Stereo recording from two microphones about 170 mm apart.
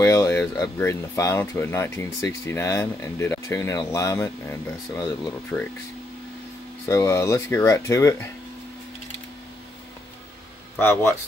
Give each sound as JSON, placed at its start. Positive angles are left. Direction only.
{"t": 0.0, "sound": "speech", "side_deg": 15}
{"t": 6.9, "sound": "speech", "side_deg": 15}